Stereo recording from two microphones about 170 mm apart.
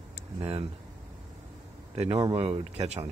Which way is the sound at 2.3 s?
35° right (ahead or behind).